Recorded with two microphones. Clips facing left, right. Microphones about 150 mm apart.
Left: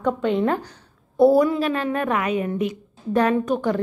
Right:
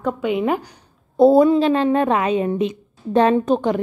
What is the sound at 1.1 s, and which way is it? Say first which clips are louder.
A woman's voice: right 4 dB; 25° right (ahead or behind).